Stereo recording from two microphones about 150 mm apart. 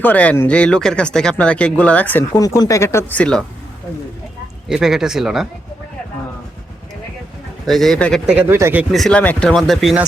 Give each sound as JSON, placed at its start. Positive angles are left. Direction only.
{"t": 0.0, "sound": "speech", "side_deg": 10}
{"t": 2.4, "sound": "speech", "side_deg": 20}
{"t": 4.7, "sound": "speech", "side_deg": -5}
{"t": 7.7, "sound": "speech", "side_deg": 0}
{"t": 8.3, "sound": "speech", "side_deg": -15}
{"t": 8.8, "sound": "speech", "side_deg": 0}